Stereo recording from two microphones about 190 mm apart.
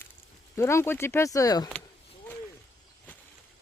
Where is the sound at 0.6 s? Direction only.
15° left (ahead or behind).